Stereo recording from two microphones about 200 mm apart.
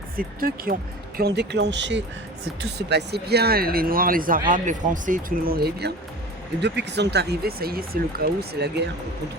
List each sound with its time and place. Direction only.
0.2 s speech: 45° right (ahead or behind)